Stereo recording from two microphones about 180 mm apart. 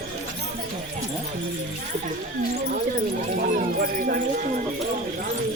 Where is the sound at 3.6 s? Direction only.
50° right (ahead or behind).